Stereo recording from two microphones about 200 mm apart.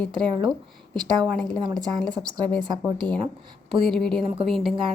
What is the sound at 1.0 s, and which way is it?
Speech, 20° right (ahead or behind).